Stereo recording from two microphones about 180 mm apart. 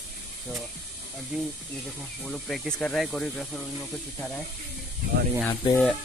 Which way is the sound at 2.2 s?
Centre (ahead or behind).